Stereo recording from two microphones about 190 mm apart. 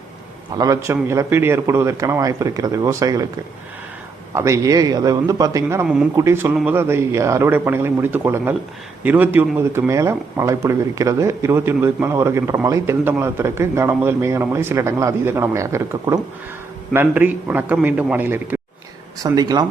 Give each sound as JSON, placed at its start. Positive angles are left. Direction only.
{"t": 0.5, "sound": "speech", "side_deg": -20}
{"t": 19.2, "sound": "speech", "side_deg": -20}